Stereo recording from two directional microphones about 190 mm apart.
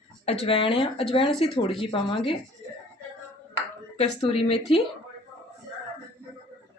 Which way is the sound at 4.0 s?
30° left (ahead or behind).